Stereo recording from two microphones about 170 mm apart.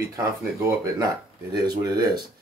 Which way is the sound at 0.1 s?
20° right (ahead or behind).